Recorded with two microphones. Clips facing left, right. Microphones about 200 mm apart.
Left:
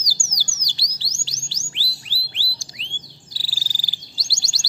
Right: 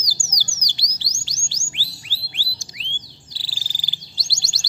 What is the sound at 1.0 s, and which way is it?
Music, 15° right (ahead or behind).